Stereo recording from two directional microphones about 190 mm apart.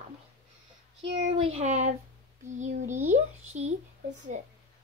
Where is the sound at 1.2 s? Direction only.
30° right (ahead or behind).